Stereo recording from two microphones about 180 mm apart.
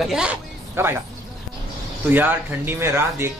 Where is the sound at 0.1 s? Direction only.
5° right (ahead or behind).